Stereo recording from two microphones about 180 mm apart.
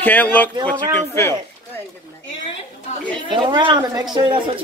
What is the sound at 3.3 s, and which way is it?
A woman's voice, 25° right (ahead or behind).